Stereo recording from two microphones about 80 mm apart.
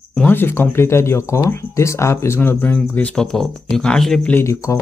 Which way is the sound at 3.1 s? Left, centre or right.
Centre.